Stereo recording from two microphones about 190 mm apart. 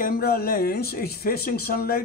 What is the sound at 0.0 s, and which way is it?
Speech, 50° left (ahead or behind).